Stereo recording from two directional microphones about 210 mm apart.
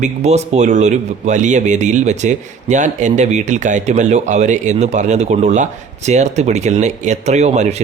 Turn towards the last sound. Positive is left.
turn(degrees=-30)  # may be behind; listen again after turning